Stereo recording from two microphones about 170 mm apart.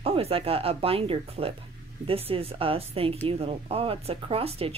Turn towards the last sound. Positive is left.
turn(degrees=-35)  # may be behind; listen again after turning